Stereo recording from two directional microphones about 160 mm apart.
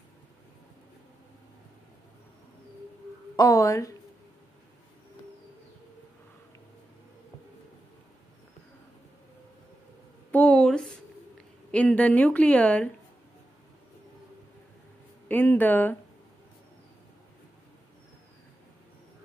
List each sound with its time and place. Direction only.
3.3 s a woman's voice: 20° left (ahead or behind)
10.3 s a sound: 5° left (ahead or behind)
11.7 s a woman's voice: 10° left (ahead or behind)
15.2 s a woman's voice: 10° left (ahead or behind)